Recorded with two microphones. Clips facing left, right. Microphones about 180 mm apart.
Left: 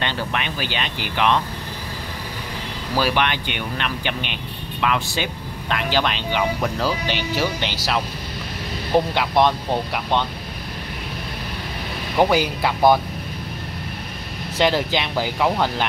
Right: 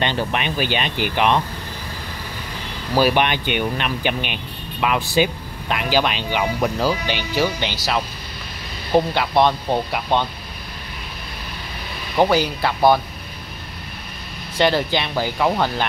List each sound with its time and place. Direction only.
0.0 s speech: 20° right (ahead or behind)
3.0 s speech: 15° right (ahead or behind)
12.2 s speech: 10° left (ahead or behind)
14.6 s speech: 5° left (ahead or behind)